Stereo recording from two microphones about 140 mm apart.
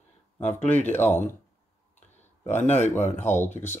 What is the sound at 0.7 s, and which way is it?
Speech, 15° left (ahead or behind).